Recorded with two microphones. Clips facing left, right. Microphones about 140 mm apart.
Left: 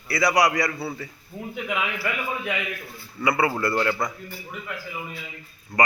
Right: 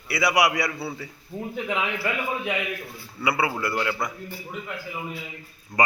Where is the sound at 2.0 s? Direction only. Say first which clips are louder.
Right 1 dB; 20° right (ahead or behind).